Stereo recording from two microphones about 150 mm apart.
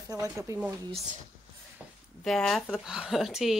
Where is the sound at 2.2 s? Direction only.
Centre (ahead or behind).